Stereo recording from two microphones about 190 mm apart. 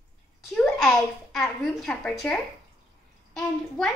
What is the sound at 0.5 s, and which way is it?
A woman's voice, 5° left (ahead or behind).